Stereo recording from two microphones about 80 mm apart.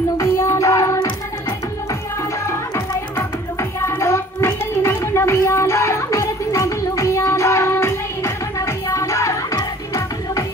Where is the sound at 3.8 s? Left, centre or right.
Left.